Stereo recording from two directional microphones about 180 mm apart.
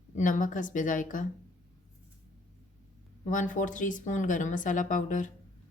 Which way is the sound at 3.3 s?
45° left (ahead or behind).